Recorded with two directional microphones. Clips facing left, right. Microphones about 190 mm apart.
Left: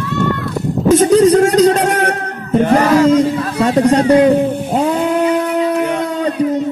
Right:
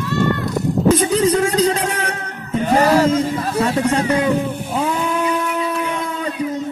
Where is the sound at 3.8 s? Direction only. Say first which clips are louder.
Left 8 dB; 35° left (ahead or behind).